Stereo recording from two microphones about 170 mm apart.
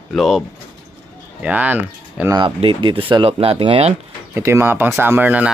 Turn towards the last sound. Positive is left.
turn(degrees=-10)  # may be behind; listen again after turning